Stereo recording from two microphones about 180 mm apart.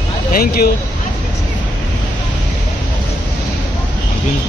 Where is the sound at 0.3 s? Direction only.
55° left (ahead or behind).